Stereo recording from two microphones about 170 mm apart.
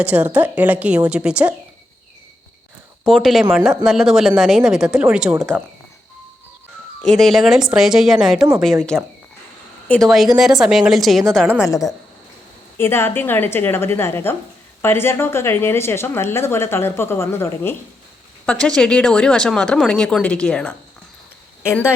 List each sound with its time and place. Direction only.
0.0 s a woman's voice: 10° right (ahead or behind)
3.1 s speech: centre (ahead or behind)
7.0 s speech: centre (ahead or behind)
10.1 s speech: centre (ahead or behind)
11.6 s a woman's voice: 20° left (ahead or behind)